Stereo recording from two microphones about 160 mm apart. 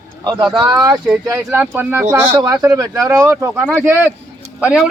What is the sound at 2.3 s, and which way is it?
Speech, 25° right (ahead or behind).